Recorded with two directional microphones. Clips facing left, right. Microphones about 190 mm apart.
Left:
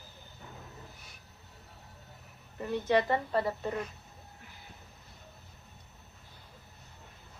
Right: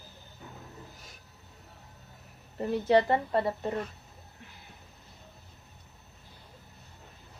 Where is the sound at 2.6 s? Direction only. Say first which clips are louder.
Right 4 dB; 30° right (ahead or behind).